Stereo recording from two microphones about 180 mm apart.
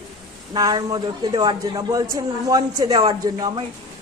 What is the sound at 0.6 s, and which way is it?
A man's voice, 20° right (ahead or behind).